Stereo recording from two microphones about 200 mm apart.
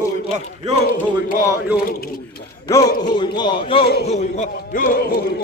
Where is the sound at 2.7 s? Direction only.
15° left (ahead or behind).